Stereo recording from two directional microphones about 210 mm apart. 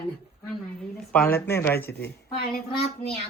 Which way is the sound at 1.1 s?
10° left (ahead or behind).